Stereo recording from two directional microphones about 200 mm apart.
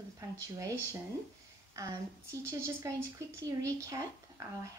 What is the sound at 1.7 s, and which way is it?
Speech, 15° right (ahead or behind).